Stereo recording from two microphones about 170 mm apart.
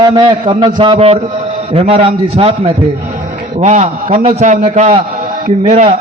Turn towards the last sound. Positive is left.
turn(degrees=-40)  # may be behind; listen again after turning